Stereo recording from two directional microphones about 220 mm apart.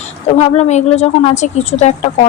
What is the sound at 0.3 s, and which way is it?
A woman's voice, 30° left (ahead or behind).